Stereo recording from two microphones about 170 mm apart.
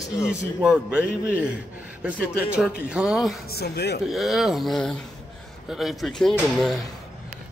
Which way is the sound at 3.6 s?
75° left (ahead or behind).